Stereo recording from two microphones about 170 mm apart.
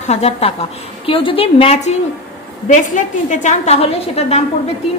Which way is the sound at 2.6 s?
45° left (ahead or behind).